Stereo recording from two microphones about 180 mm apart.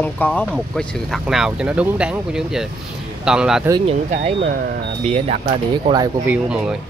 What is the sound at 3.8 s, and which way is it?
Speech, 40° right (ahead or behind).